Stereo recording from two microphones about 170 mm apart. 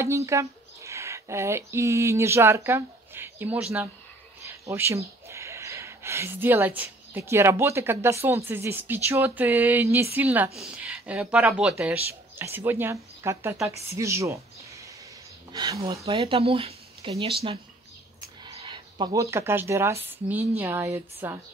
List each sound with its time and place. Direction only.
0.0 s speech: 15° right (ahead or behind)
15.5 s speech: 25° right (ahead or behind)
16.1 s speech: 30° right (ahead or behind)
18.4 s a sound: 25° right (ahead or behind)
19.3 s speech: 15° right (ahead or behind)